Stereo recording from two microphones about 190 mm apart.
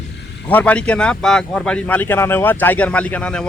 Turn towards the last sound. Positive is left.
turn(degrees=5)  # may be behind; listen again after turning